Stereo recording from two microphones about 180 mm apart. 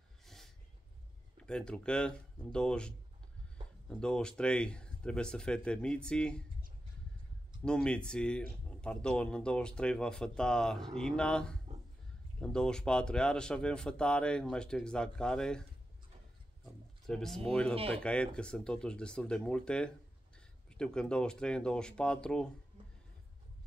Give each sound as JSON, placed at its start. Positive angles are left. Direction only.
{"t": 0.2, "sound": "a sound", "side_deg": 0}
{"t": 1.4, "sound": "speech", "side_deg": 5}
{"t": 4.0, "sound": "speech", "side_deg": 5}
{"t": 7.6, "sound": "speech", "side_deg": 5}
{"t": 17.0, "sound": "speech", "side_deg": 0}
{"t": 17.7, "sound": "speech", "side_deg": -30}
{"t": 18.0, "sound": "speech", "side_deg": 5}